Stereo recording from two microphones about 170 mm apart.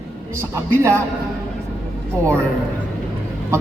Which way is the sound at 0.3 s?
15° right (ahead or behind).